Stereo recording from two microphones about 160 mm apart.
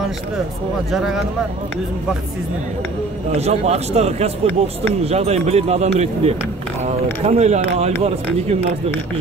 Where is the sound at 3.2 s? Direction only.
40° right (ahead or behind).